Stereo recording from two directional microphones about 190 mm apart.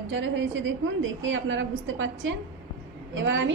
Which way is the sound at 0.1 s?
75° right (ahead or behind).